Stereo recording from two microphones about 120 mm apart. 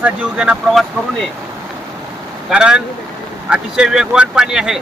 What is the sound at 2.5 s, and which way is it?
Speech, 10° right (ahead or behind).